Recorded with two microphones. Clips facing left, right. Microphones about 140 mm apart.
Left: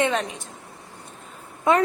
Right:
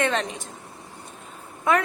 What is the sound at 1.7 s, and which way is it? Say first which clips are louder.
Speech: left 2 dB; 25° left (ahead or behind).